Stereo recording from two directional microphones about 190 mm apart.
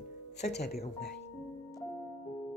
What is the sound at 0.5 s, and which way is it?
Speech, 60° left (ahead or behind).